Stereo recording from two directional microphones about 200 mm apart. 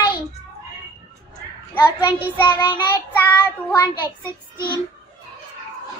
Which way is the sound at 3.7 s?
15° left (ahead or behind).